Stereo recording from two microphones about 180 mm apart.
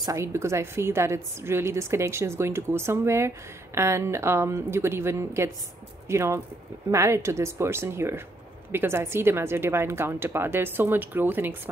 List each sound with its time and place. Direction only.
0.0 s a woman's voice: 15° right (ahead or behind)